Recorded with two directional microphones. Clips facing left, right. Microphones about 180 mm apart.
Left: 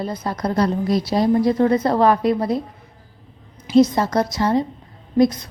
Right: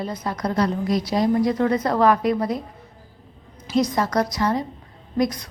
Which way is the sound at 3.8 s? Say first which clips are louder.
Left 5 dB; 25° left (ahead or behind).